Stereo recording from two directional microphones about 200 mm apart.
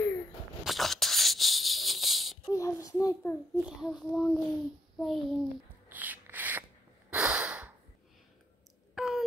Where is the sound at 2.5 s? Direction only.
15° left (ahead or behind).